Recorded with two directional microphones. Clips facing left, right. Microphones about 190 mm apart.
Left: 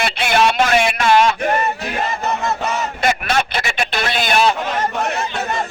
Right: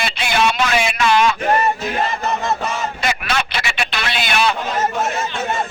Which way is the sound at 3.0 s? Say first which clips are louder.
Left 5 dB; 50° left (ahead or behind).